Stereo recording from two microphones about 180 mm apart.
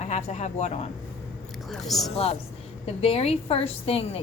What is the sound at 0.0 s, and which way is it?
Speech, 40° left (ahead or behind).